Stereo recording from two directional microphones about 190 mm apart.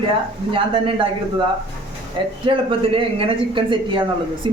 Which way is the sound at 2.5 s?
25° right (ahead or behind).